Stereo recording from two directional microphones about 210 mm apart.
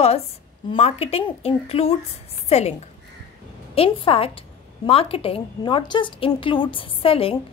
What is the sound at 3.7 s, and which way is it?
A woman's voice, 25° left (ahead or behind).